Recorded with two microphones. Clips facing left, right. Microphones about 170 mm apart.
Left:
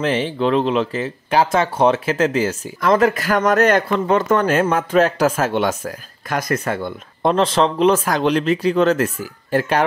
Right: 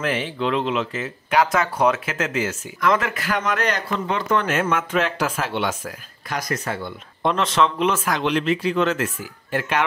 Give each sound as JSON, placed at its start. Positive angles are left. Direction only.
{"t": 0.0, "sound": "speech", "side_deg": 30}
{"t": 7.2, "sound": "speech", "side_deg": 35}